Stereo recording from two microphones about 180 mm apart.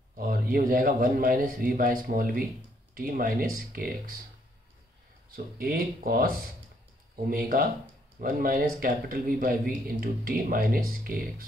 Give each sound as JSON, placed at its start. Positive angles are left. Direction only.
{"t": 0.1, "sound": "a man's voice", "side_deg": -55}
{"t": 5.3, "sound": "a man's voice", "side_deg": -55}